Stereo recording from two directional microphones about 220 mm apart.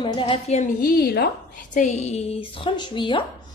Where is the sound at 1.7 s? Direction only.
35° left (ahead or behind).